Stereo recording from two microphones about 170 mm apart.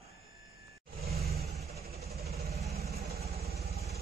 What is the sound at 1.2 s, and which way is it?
Vehicle, 65° right (ahead or behind).